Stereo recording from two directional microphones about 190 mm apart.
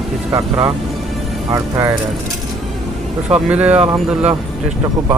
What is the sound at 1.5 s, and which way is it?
Speech, 15° right (ahead or behind).